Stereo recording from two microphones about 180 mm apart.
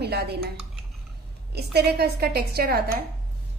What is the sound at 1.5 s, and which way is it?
A woman's voice, 65° right (ahead or behind).